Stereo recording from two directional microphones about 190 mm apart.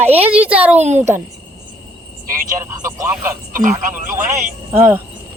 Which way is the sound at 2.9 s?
15° right (ahead or behind).